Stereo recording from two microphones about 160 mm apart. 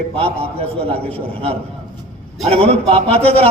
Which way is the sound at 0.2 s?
40° right (ahead or behind).